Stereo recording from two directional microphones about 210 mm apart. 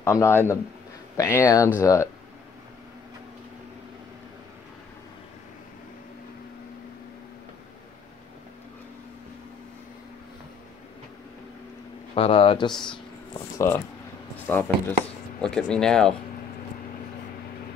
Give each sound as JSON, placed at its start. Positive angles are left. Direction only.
{"t": 0.0, "sound": "speech", "side_deg": 15}
{"t": 12.2, "sound": "speech", "side_deg": 25}
{"t": 12.7, "sound": "speech", "side_deg": 5}